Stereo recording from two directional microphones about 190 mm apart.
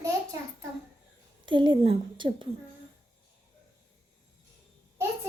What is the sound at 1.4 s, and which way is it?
A woman's voice, 25° right (ahead or behind).